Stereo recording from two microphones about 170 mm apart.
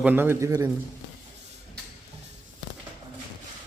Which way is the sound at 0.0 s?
10° right (ahead or behind).